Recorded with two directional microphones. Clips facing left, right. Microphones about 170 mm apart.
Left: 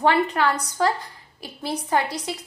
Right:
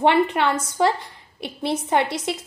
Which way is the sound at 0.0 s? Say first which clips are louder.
Right 2 dB; 20° right (ahead or behind).